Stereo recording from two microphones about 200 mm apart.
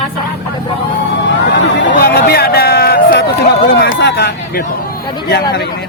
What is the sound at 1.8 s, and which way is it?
Speech, 55° left (ahead or behind).